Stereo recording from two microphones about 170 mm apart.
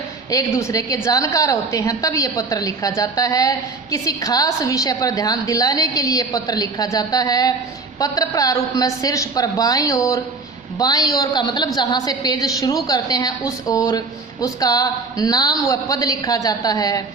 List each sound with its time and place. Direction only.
0.3 s a woman's voice: 20° left (ahead or behind)